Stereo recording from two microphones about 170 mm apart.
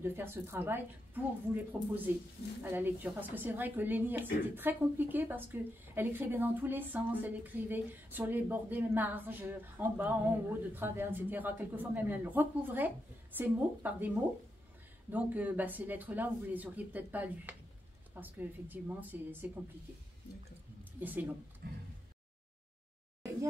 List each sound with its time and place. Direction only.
0.0 s a woman's voice: 15° right (ahead or behind)
21.0 s a woman's voice: 10° right (ahead or behind)
21.6 s a sound: 65° right (ahead or behind)